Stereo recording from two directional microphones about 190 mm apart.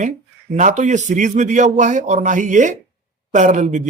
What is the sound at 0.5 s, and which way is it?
Speech, 40° right (ahead or behind).